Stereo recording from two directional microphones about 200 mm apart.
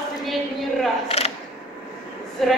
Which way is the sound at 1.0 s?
30° left (ahead or behind).